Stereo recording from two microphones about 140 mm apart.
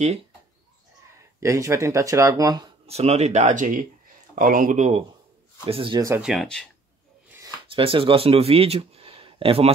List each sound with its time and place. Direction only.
1.4 s speech: 20° right (ahead or behind)
2.9 s speech: 50° right (ahead or behind)
4.4 s speech: 75° right (ahead or behind); by 5.0 s 55° right (ahead or behind)
5.7 s speech: 40° right (ahead or behind)
5.9 s speech: 20° right (ahead or behind)
6.2 s speech: centre (ahead or behind)
7.6 s speech: 40° right (ahead or behind)